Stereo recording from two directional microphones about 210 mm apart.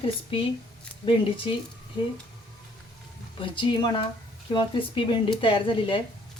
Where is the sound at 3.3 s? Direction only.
25° left (ahead or behind).